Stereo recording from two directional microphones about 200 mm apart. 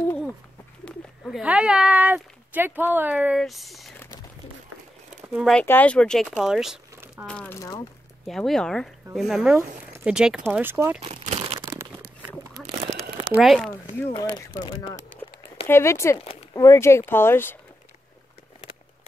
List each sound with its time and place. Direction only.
0.8 s speech: centre (ahead or behind)
5.3 s speech: centre (ahead or behind)
7.2 s speech: 5° left (ahead or behind)
8.3 s speech: centre (ahead or behind)
11.0 s crumpling: 30° right (ahead or behind)
11.6 s crumpling: 10° right (ahead or behind)
13.3 s speech: centre (ahead or behind)
13.9 s speech: 15° left (ahead or behind)
15.6 s speech: 15° left (ahead or behind)